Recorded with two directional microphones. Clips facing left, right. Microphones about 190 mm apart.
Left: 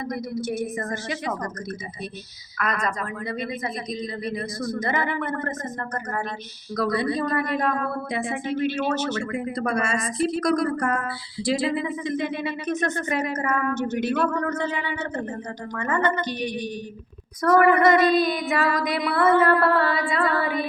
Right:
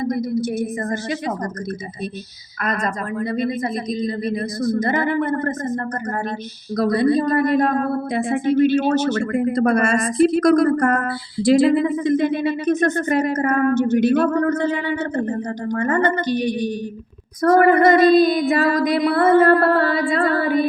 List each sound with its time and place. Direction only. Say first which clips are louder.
0.0 s female singing: right 7 dB; 35° right (ahead or behind)
2.6 s female singing: right 3 dB; 40° right (ahead or behind)
6.7 s a woman's voice: right 7 dB; 40° right (ahead or behind)
17.4 s female singing: right 4 dB; 40° right (ahead or behind)